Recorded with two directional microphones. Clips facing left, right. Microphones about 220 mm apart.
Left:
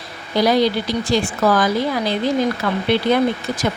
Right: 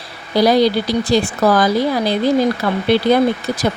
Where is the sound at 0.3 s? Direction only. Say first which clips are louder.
Right 3 dB; 35° right (ahead or behind).